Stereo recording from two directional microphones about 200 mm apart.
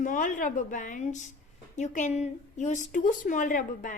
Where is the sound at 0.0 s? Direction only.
40° left (ahead or behind).